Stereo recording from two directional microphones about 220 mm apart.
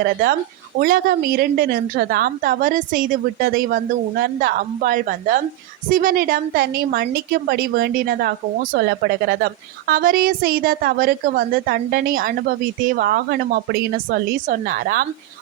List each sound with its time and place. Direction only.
0.0 s a woman's voice: 45° right (ahead or behind)